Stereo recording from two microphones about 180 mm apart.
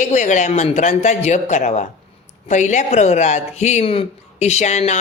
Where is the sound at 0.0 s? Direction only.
40° left (ahead or behind).